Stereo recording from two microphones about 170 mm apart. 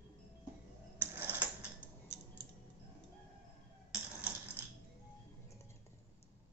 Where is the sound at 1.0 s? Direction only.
10° right (ahead or behind).